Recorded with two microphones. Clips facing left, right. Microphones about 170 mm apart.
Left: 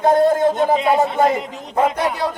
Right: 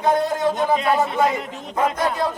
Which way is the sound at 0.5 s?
20° left (ahead or behind).